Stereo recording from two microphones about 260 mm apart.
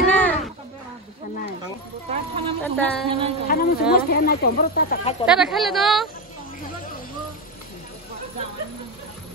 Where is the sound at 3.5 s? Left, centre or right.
Left.